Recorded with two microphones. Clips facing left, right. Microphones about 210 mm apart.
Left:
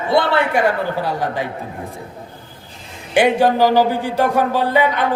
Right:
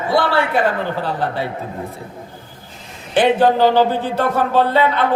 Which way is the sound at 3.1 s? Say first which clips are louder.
Even; 10° left (ahead or behind).